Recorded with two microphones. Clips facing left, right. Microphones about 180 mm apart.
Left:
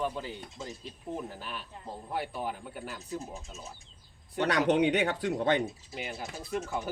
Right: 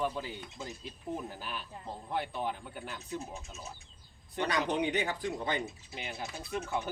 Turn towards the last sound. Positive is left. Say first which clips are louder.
# left 3 dB
turn(degrees=5)  # may be behind; listen again after turning